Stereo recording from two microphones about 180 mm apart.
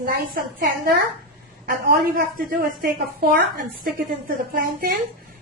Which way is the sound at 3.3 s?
55° right (ahead or behind).